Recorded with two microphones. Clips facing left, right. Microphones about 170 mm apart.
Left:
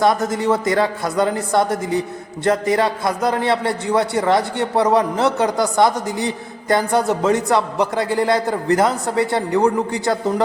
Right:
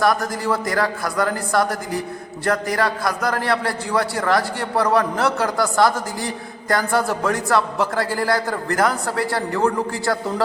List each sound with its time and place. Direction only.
0.0 s a man's voice: 20° left (ahead or behind)